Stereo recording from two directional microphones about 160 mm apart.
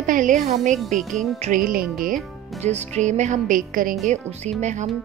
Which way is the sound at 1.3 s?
55° right (ahead or behind).